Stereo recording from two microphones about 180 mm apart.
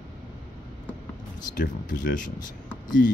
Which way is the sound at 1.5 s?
45° left (ahead or behind).